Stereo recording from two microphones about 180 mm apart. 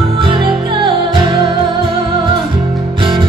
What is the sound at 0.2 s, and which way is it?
Music, 30° right (ahead or behind).